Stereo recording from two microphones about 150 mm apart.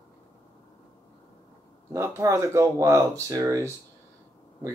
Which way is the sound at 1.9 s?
20° right (ahead or behind).